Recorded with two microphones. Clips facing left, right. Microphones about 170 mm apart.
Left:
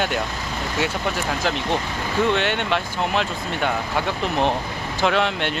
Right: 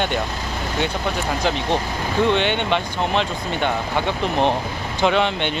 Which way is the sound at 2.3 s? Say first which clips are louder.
Right 2 dB; centre (ahead or behind).